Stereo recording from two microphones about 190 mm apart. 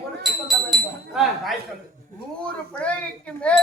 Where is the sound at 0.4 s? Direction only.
Centre (ahead or behind).